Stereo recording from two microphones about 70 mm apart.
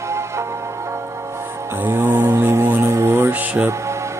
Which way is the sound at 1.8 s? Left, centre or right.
Right.